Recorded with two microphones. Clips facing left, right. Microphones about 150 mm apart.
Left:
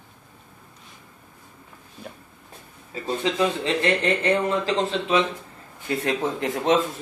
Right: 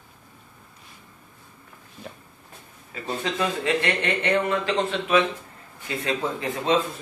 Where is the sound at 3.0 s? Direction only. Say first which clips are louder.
Left 3 dB; 25° left (ahead or behind).